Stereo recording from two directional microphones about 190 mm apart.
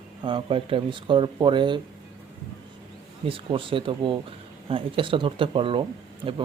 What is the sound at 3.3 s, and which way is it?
Speech, 30° right (ahead or behind).